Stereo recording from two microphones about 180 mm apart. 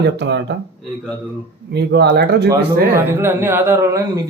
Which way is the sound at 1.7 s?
65° right (ahead or behind).